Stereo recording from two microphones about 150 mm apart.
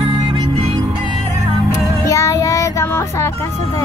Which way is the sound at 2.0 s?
20° left (ahead or behind).